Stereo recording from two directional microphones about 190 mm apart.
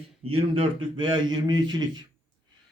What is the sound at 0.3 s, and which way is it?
A man's voice, 30° right (ahead or behind).